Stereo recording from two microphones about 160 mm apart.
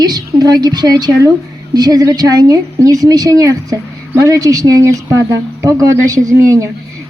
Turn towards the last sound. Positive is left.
turn(degrees=-20)  # may be behind; listen again after turning